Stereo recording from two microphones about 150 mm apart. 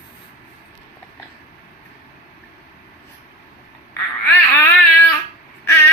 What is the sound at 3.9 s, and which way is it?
Babbling, 15° left (ahead or behind).